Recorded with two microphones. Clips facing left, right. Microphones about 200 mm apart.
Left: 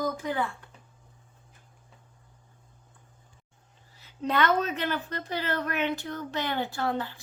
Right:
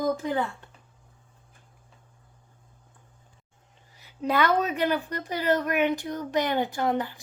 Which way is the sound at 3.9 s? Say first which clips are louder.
Right 2 dB; 10° right (ahead or behind).